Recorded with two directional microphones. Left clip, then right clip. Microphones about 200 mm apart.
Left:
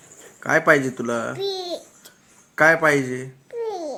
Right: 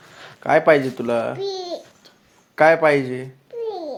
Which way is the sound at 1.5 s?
10° left (ahead or behind).